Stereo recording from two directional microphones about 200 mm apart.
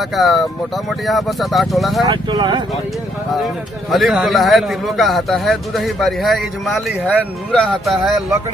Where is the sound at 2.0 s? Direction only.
20° right (ahead or behind).